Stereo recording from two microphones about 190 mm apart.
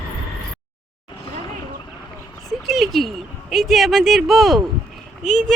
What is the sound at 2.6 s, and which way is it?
A woman's voice, centre (ahead or behind).